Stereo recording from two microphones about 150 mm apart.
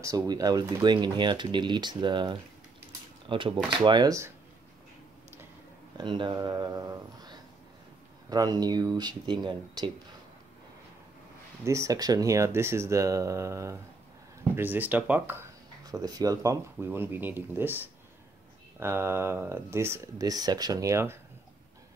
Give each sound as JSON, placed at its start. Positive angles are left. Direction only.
{"t": 0.0, "sound": "speech", "side_deg": -25}
{"t": 5.9, "sound": "speech", "side_deg": -30}
{"t": 11.6, "sound": "speech", "side_deg": -20}
{"t": 15.8, "sound": "speech", "side_deg": -25}